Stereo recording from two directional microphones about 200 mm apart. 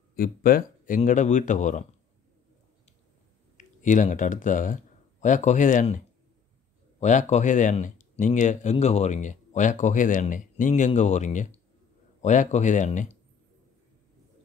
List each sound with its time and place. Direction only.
0.1 s speech: 45° left (ahead or behind)
3.5 s speech: 40° left (ahead or behind)